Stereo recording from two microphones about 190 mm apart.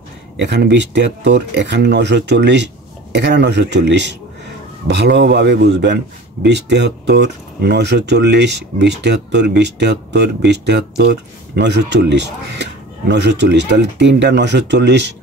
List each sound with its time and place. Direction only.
0.4 s speech: 65° right (ahead or behind)